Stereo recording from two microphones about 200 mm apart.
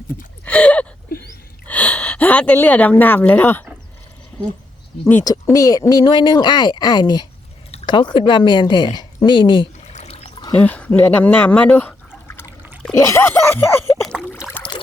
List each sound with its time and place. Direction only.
0.4 s a sound: 5° left (ahead or behind)
1.1 s a sound: 45° left (ahead or behind)
1.6 s speech: 5° left (ahead or behind)
5.0 s speech: 15° left (ahead or behind)
9.9 s trickle: 35° left (ahead or behind)
10.4 s speech: 10° left (ahead or behind)
12.5 s trickle: 10° right (ahead or behind)
12.8 s speech: 15° left (ahead or behind)
14.0 s a sound: centre (ahead or behind)